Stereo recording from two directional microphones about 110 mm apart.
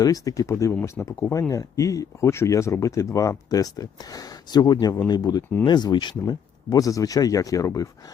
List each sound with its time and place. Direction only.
0.0 s speech: 35° left (ahead or behind)
0.7 s speech: 15° left (ahead or behind)
1.2 s speech: 30° left (ahead or behind)